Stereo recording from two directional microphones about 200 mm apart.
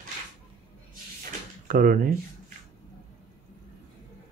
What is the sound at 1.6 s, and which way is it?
Speech, 40° right (ahead or behind).